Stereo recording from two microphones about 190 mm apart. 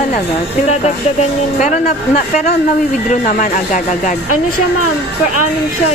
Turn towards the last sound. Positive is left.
turn(degrees=45)  # may be behind; listen again after turning